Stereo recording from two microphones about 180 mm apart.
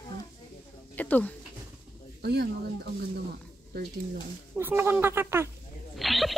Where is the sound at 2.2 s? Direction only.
65° right (ahead or behind).